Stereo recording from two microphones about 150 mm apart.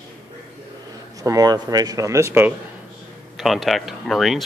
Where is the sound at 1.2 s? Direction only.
25° right (ahead or behind).